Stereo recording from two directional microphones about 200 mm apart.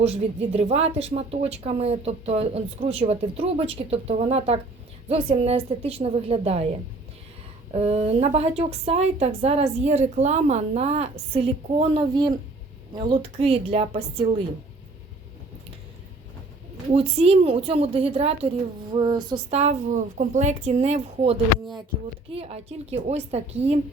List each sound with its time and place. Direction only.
0.0 s a woman's voice: 30° right (ahead or behind)
7.7 s a woman's voice: 30° right (ahead or behind)
16.9 s a woman's voice: 30° right (ahead or behind)
19.5 s a woman's voice: 35° right (ahead or behind)